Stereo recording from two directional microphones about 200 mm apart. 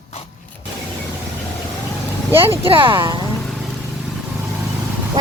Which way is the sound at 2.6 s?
25° right (ahead or behind).